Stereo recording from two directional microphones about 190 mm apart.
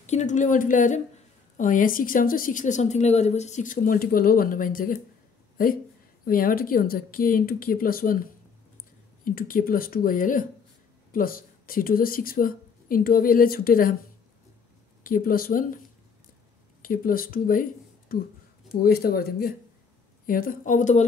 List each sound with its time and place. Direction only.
0.0 s a woman's voice: 35° left (ahead or behind)
15.0 s a woman's voice: 45° left (ahead or behind)
16.8 s a woman's voice: 45° left (ahead or behind)